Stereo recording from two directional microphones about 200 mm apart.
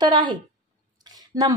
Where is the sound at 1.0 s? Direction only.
20° right (ahead or behind).